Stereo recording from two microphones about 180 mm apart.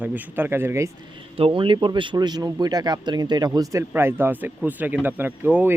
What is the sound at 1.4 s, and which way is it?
Speech, 30° right (ahead or behind).